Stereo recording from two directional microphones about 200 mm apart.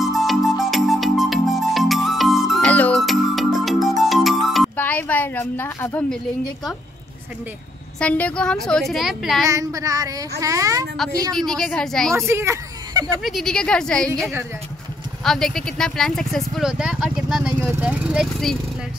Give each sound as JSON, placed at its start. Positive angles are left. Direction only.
{"t": 0.0, "sound": "music", "side_deg": 0}
{"t": 8.0, "sound": "speech", "side_deg": 5}
{"t": 9.5, "sound": "child singing", "side_deg": -15}
{"t": 11.3, "sound": "speech", "side_deg": 5}
{"t": 12.3, "sound": "a sound", "side_deg": -15}
{"t": 13.0, "sound": "speech", "side_deg": 0}